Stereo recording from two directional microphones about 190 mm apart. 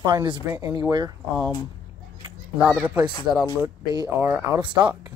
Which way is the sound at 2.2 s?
20° right (ahead or behind).